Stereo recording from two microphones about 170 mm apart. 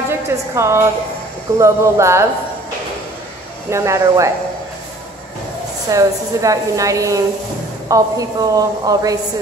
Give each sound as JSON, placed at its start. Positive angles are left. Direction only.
{"t": 0.1, "sound": "a woman's voice", "side_deg": -15}
{"t": 3.7, "sound": "speech", "side_deg": -15}
{"t": 5.9, "sound": "a woman's voice", "side_deg": -20}